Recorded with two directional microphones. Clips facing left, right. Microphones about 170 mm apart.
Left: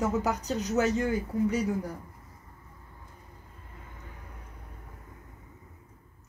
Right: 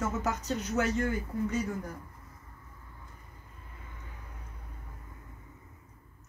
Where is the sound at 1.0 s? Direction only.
15° left (ahead or behind).